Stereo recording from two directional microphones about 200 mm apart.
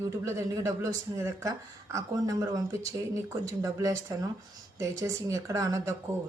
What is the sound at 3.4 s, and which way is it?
A man's voice, 15° right (ahead or behind).